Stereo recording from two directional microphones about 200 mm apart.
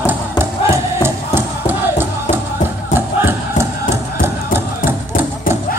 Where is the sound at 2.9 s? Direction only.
10° right (ahead or behind).